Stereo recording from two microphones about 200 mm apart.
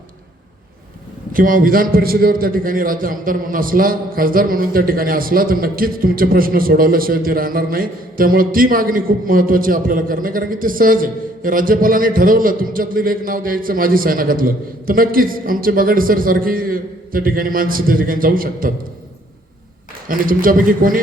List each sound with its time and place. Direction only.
1.3 s a man's voice: 45° right (ahead or behind)
20.1 s a man's voice: 45° right (ahead or behind)